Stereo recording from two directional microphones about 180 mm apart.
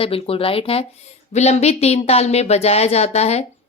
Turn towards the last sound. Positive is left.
turn(degrees=35)  # may be behind; listen again after turning